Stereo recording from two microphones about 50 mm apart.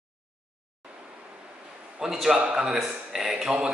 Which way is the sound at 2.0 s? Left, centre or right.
Centre.